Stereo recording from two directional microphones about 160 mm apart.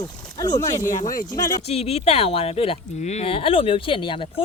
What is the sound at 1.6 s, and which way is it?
Speech, 40° left (ahead or behind).